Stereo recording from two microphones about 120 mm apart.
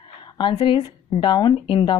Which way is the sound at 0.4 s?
45° left (ahead or behind).